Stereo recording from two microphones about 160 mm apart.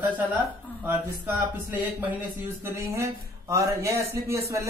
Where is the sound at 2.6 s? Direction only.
15° right (ahead or behind).